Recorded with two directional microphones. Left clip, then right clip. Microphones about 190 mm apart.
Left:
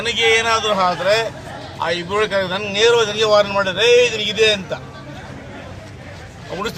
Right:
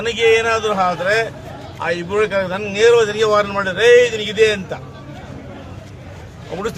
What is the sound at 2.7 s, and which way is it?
Speech, 10° right (ahead or behind).